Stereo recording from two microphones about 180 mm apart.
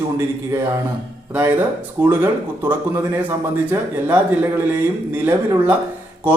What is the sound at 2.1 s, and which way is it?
Speech, 10° right (ahead or behind).